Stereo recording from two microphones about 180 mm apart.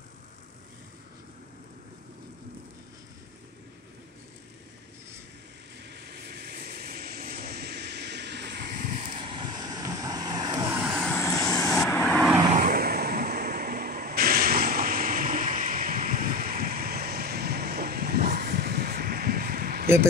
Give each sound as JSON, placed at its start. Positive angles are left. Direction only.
{"t": 5.9, "sound": "vehicle", "side_deg": -65}
{"t": 10.7, "sound": "vehicle", "side_deg": -10}
{"t": 11.0, "sound": "vehicle", "side_deg": 10}
{"t": 12.5, "sound": "vehicle", "side_deg": -55}